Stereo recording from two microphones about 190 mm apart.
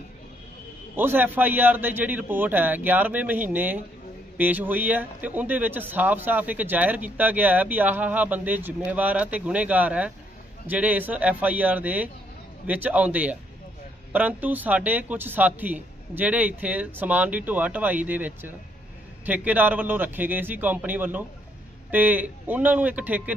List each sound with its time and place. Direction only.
0.9 s speech: 10° right (ahead or behind)